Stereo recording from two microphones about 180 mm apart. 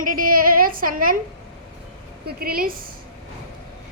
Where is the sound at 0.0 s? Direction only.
50° right (ahead or behind).